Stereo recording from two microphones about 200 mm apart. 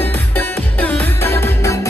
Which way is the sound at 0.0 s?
10° left (ahead or behind).